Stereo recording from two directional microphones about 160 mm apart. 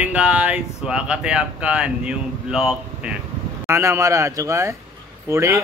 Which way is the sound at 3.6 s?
15° right (ahead or behind).